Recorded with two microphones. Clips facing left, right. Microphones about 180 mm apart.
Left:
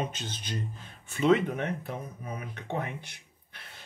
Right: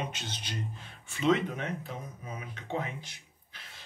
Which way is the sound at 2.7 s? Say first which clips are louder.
Left 1 dB; 60° left (ahead or behind).